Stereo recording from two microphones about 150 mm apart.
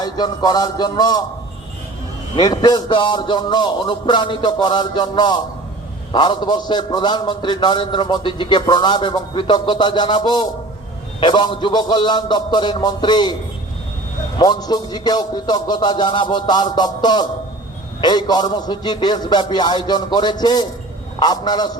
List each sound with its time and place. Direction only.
0.0 s music: 25° left (ahead or behind)
2.3 s a man's voice: 30° left (ahead or behind)
14.3 s music: 30° left (ahead or behind)